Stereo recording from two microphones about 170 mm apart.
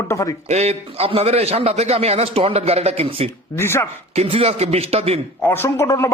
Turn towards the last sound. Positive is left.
turn(degrees=15)  # may be behind; listen again after turning